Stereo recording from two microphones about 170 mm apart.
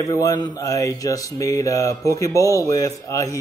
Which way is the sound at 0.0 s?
20° left (ahead or behind).